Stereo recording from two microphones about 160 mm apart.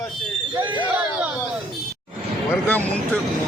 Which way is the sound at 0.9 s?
10° right (ahead or behind).